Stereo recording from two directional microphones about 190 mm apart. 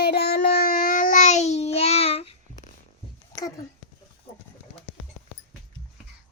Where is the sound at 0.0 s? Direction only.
55° left (ahead or behind); by 2.7 s 35° left (ahead or behind).